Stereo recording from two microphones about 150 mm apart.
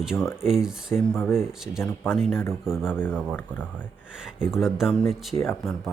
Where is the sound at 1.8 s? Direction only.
15° left (ahead or behind).